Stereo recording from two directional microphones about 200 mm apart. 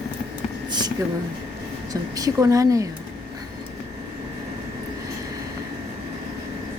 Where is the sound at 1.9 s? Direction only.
15° right (ahead or behind).